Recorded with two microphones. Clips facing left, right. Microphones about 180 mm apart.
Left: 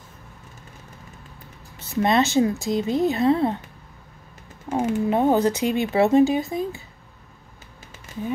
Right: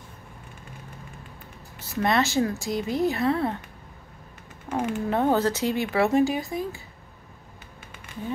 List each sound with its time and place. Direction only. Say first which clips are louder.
2.0 s speech: left 4 dB; 20° left (ahead or behind)
4.6 s speech: left 4 dB; 25° left (ahead or behind)